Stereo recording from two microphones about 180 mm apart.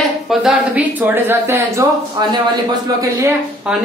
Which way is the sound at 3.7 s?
5° right (ahead or behind).